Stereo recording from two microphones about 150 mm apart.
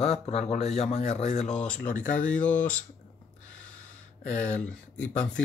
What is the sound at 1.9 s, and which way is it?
Speech, 60° left (ahead or behind).